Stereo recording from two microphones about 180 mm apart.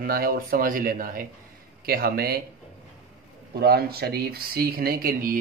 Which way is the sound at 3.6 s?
60° right (ahead or behind).